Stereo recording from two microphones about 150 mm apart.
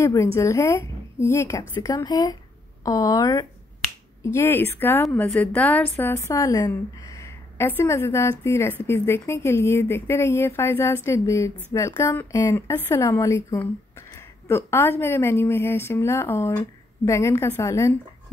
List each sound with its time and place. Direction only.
0.0 s a woman's voice: 20° left (ahead or behind)